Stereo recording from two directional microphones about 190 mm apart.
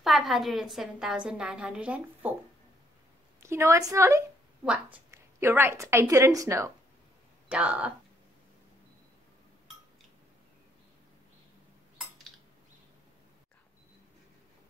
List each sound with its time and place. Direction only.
0.0 s a woman's voice: centre (ahead or behind)
3.4 s a woman's voice: 15° right (ahead or behind)
7.4 s speech: 5° right (ahead or behind)